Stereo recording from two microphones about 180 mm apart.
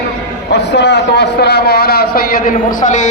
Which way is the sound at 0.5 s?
75° left (ahead or behind).